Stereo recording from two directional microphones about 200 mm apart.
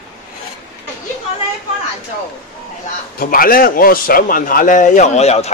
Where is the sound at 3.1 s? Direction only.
45° left (ahead or behind).